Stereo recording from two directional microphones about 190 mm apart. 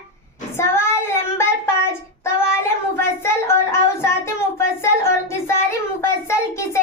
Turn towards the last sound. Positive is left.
turn(degrees=15)  # may be behind; listen again after turning